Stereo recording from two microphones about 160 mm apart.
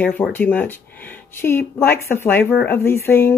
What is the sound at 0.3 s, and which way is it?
Speech, 10° left (ahead or behind).